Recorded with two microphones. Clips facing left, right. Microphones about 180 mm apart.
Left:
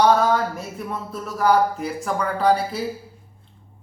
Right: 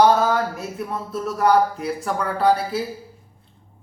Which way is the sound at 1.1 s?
Centre (ahead or behind).